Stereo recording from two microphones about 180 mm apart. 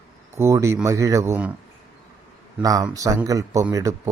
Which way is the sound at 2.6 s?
20° right (ahead or behind).